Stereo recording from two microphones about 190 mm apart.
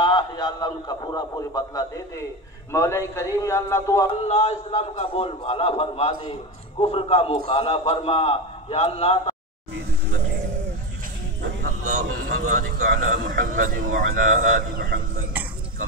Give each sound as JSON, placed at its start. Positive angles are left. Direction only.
{"t": 0.0, "sound": "radio", "side_deg": 25}
{"t": 2.7, "sound": "speech", "side_deg": 15}
{"t": 4.2, "sound": "a man's voice", "side_deg": 35}
{"t": 12.1, "sound": "a man's voice", "side_deg": -45}